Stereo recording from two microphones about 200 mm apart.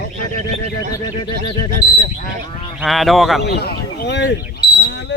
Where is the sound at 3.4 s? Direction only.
55° left (ahead or behind).